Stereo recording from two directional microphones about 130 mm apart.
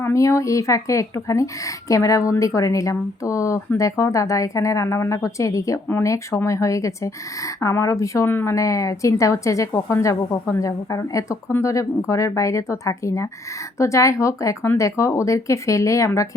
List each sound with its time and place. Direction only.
0.0 s a woman's voice: 20° left (ahead or behind)